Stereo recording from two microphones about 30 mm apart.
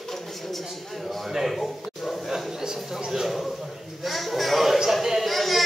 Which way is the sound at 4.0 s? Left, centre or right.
Centre.